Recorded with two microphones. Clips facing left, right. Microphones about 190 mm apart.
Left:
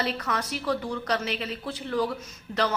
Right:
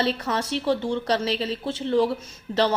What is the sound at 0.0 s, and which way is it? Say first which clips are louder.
A woman's voice: right 4 dB; 30° right (ahead or behind).